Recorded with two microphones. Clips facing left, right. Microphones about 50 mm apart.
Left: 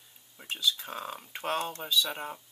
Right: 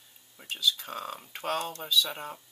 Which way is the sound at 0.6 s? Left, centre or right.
Centre.